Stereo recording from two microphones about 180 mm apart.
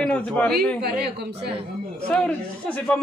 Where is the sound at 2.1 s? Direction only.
5° left (ahead or behind).